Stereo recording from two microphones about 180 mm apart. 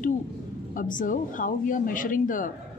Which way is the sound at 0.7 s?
50° left (ahead or behind).